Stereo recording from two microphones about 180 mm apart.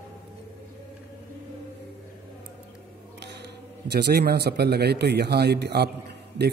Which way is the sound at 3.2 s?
70° right (ahead or behind).